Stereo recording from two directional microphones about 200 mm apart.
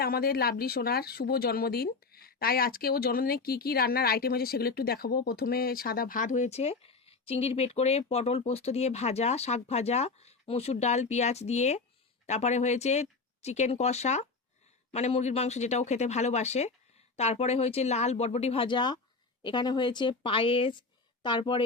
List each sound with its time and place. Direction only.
0.0 s speech: 50° left (ahead or behind); by 21.6 s 25° left (ahead or behind)